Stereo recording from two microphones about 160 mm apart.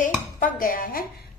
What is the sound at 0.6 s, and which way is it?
Speech, 60° left (ahead or behind).